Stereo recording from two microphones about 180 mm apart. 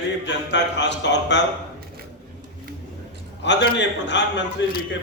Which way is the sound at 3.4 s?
80° left.